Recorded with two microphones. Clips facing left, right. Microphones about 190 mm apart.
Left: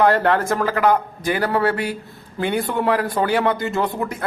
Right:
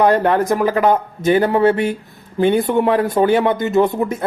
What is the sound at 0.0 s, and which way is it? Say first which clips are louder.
Speech: right 3 dB; 15° right (ahead or behind).